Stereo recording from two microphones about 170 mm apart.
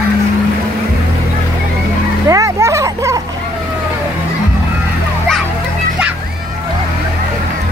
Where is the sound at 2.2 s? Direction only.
20° right (ahead or behind).